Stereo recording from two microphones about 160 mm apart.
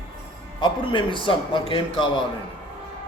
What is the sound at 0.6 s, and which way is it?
A man's voice, 30° left (ahead or behind).